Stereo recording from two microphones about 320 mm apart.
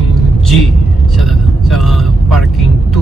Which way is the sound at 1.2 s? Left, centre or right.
Centre.